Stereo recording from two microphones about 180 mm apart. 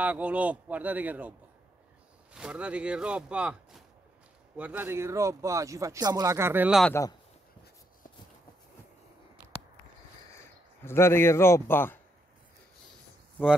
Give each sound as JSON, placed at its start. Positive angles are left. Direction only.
{"t": 0.0, "sound": "speech", "side_deg": -10}
{"t": 2.3, "sound": "speech", "side_deg": -5}
{"t": 6.9, "sound": "speech", "side_deg": 15}
{"t": 10.8, "sound": "speech", "side_deg": 15}